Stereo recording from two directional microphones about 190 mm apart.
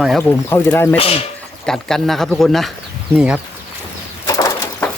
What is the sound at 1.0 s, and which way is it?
Speech, 30° left (ahead or behind).